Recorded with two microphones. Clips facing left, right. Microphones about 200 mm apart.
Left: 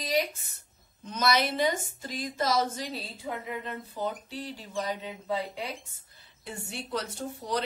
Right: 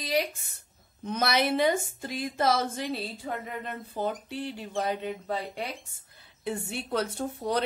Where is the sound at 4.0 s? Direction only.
55° right (ahead or behind).